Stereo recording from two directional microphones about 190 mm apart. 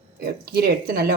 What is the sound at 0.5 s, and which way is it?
Speech, 50° right (ahead or behind).